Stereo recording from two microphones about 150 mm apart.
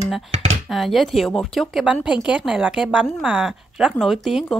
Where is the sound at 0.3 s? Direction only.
45° right (ahead or behind).